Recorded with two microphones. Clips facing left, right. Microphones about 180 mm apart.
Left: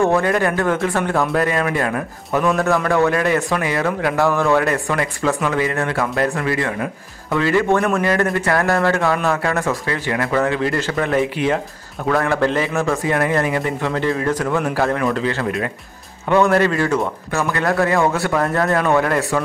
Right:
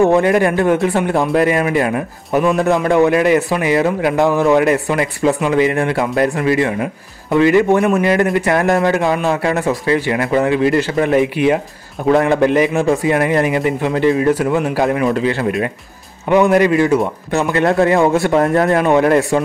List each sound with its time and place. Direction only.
0.0 s speech: 20° right (ahead or behind)